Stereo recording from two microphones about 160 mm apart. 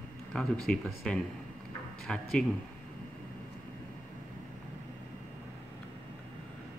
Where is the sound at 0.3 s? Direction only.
Centre (ahead or behind).